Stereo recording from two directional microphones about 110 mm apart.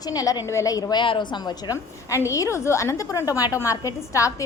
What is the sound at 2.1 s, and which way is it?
A woman's voice, 25° left (ahead or behind).